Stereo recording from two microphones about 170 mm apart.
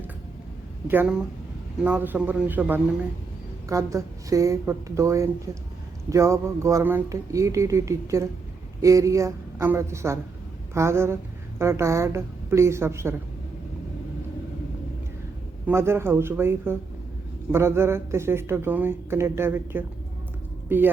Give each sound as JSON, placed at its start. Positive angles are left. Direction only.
{"t": 0.9, "sound": "a woman's voice", "side_deg": -10}
{"t": 15.6, "sound": "a woman's voice", "side_deg": -15}